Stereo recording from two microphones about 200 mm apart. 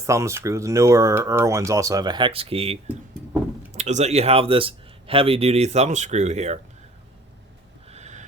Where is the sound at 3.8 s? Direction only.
35° right (ahead or behind).